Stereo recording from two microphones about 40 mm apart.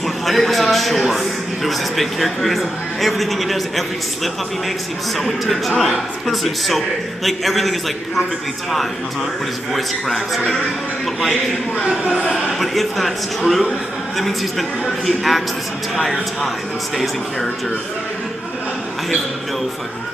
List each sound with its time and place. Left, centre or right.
0.3 s a man's voice: centre
9.8 s a man's voice: centre
12.3 s a man's voice: centre